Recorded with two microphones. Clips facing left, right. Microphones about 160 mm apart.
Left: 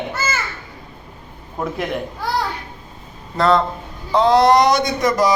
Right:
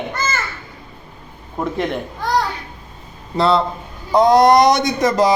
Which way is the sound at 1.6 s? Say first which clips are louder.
Right 2 dB; 5° left (ahead or behind).